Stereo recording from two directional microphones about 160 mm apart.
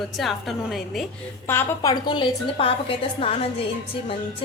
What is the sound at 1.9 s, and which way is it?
A woman's voice, 30° left (ahead or behind).